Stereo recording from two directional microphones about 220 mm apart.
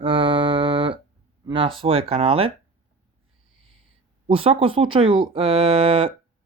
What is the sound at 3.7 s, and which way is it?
Speech, 25° right (ahead or behind).